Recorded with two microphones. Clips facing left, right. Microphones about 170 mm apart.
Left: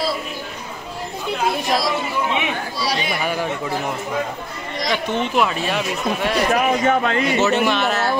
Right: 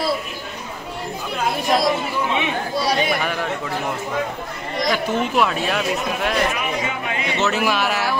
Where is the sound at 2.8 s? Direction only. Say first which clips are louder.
Right 3 dB; 50° right (ahead or behind).